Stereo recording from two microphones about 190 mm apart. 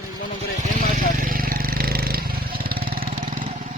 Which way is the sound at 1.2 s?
50° right (ahead or behind).